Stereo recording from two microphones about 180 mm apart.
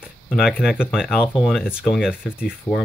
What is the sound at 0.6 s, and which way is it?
Speech, 5° right (ahead or behind).